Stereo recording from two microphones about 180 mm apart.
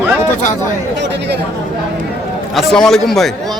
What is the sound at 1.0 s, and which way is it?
Speech, 70° right (ahead or behind).